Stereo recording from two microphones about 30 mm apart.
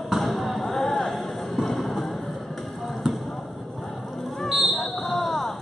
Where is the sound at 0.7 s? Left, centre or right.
Centre.